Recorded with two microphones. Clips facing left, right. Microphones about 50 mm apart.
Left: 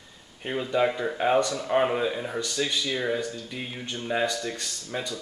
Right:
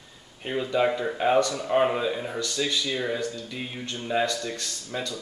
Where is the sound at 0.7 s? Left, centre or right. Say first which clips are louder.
Even; centre.